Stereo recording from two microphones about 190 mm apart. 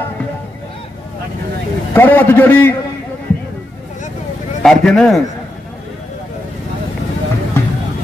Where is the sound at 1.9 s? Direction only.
10° left (ahead or behind).